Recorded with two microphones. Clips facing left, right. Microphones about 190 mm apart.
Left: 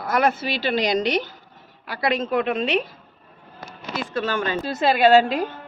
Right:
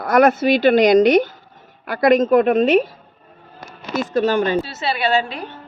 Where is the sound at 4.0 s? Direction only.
40° right (ahead or behind).